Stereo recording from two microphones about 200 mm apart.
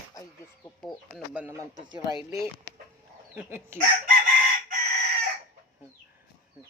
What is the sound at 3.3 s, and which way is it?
Speech, 10° right (ahead or behind).